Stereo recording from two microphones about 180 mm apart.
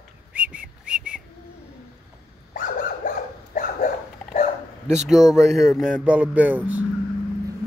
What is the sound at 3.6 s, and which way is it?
Dog, 45° left (ahead or behind).